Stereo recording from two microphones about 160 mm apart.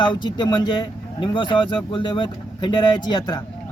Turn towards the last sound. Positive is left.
turn(degrees=30)  # may be behind; listen again after turning